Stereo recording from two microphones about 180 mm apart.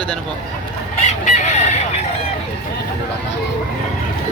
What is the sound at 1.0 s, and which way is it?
Chicken, 40° left (ahead or behind).